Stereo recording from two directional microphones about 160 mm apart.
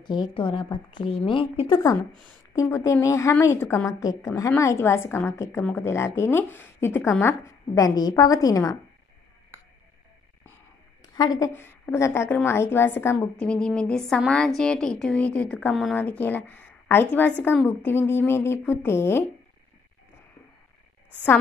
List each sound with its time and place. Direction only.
0.0 s a woman's voice: 30° left (ahead or behind)
1.7 s a woman's voice: 20° left (ahead or behind)
11.1 s a woman's voice: 25° left (ahead or behind)